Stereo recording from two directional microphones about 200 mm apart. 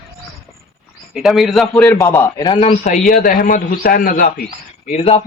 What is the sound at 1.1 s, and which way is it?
Speech, centre (ahead or behind).